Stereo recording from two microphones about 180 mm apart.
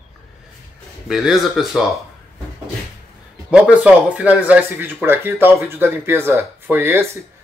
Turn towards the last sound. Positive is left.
turn(degrees=-15)  # may be behind; listen again after turning